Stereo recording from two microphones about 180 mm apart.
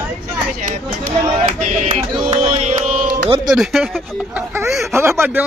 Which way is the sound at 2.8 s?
45° right (ahead or behind).